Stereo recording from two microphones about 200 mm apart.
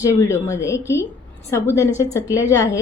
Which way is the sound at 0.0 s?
15° left (ahead or behind).